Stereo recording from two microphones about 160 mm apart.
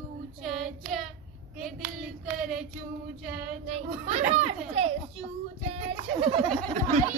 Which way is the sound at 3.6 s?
40° right (ahead or behind).